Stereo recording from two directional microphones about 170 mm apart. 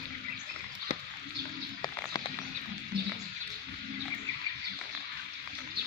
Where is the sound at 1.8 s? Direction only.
20° left (ahead or behind).